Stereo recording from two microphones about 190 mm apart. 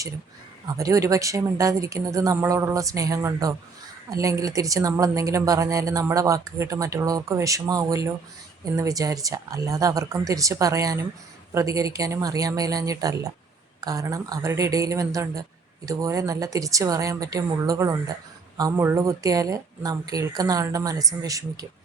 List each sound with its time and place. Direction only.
0.8 s speech: 15° right (ahead or behind)